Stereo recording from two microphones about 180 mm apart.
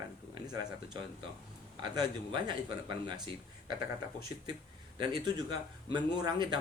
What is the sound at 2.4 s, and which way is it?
Speech, 25° right (ahead or behind).